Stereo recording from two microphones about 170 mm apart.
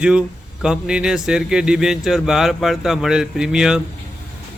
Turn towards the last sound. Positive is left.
turn(degrees=-5)  # may be behind; listen again after turning